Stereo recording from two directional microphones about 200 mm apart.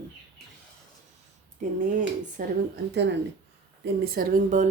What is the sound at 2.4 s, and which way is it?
Speech, 45° right (ahead or behind).